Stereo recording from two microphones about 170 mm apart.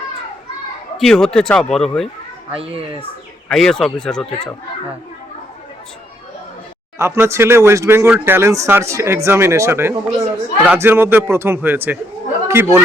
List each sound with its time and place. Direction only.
0.9 s speech: 5° left (ahead or behind)
2.5 s a child's voice: 35° right (ahead or behind)
3.5 s speech: 5° left (ahead or behind)
7.0 s speech: 15° right (ahead or behind)